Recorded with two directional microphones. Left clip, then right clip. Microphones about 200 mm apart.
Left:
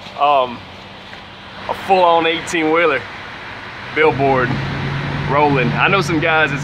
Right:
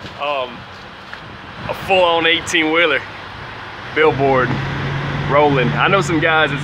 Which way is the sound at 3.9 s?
Centre (ahead or behind).